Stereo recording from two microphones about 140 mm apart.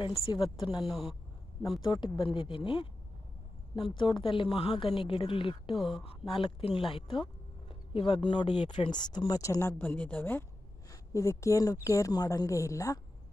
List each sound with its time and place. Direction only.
0.3 s a woman's voice: 30° left (ahead or behind)
0.8 s speech: centre (ahead or behind)
1.8 s a woman's voice: 30° left (ahead or behind)
5.8 s speech: centre (ahead or behind)
6.2 s a woman's voice: 40° left (ahead or behind); by 13.0 s 25° left (ahead or behind)